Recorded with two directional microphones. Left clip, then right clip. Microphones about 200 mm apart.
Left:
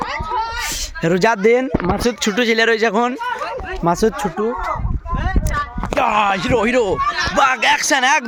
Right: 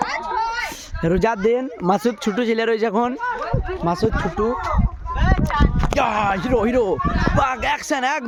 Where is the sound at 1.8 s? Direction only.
5° right (ahead or behind).